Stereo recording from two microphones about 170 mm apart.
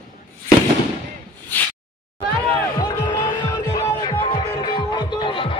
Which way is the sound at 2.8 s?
25° left (ahead or behind).